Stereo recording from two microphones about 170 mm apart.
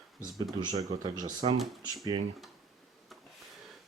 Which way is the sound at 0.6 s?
25° right (ahead or behind).